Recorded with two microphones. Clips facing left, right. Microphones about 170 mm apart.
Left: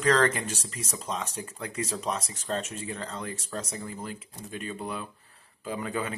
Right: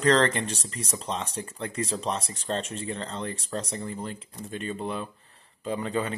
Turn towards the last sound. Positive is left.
turn(degrees=5)  # may be behind; listen again after turning